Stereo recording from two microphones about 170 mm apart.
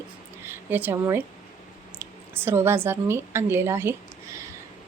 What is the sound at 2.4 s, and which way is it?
Speech, 15° right (ahead or behind).